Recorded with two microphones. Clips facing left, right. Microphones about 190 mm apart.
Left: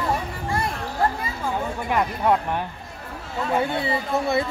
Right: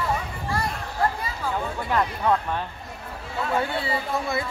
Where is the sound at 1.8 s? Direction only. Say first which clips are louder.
Left 2 dB; 20° left (ahead or behind).